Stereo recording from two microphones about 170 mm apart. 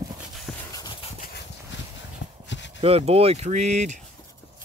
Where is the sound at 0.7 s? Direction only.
25° left (ahead or behind).